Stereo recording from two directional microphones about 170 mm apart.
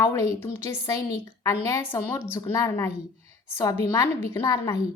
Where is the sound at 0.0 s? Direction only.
15° left (ahead or behind).